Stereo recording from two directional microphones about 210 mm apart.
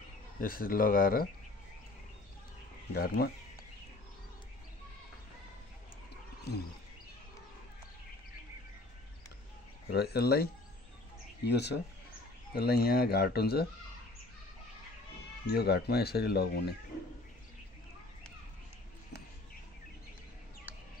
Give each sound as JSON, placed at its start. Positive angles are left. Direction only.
{"t": 0.4, "sound": "speech", "side_deg": 45}
{"t": 2.9, "sound": "speech", "side_deg": 50}
{"t": 6.5, "sound": "speech", "side_deg": 50}
{"t": 9.8, "sound": "speech", "side_deg": 50}
{"t": 15.4, "sound": "speech", "side_deg": 50}